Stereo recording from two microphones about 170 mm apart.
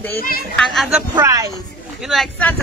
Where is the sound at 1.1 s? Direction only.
20° right (ahead or behind).